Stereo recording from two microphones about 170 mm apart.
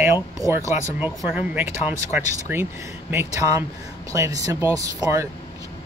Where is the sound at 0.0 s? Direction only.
15° right (ahead or behind).